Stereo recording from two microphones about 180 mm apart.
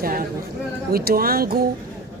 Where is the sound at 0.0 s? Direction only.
50° right (ahead or behind).